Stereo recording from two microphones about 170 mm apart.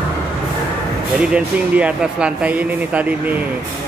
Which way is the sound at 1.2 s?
5° right (ahead or behind).